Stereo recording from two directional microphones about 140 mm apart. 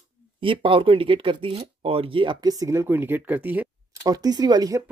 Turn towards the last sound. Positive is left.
turn(degrees=-25)  # may be behind; listen again after turning